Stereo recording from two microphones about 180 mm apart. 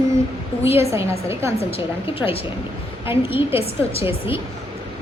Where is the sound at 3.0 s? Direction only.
10° right (ahead or behind).